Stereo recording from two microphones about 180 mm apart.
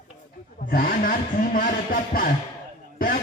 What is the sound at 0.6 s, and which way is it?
A man's voice, 55° left (ahead or behind).